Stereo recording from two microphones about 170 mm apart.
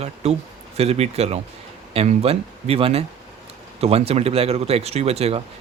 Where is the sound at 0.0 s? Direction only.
40° right (ahead or behind).